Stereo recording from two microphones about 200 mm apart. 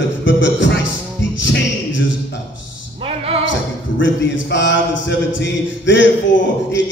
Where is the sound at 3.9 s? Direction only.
65° left (ahead or behind).